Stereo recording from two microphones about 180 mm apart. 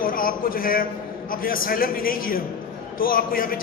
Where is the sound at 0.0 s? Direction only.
50° left (ahead or behind).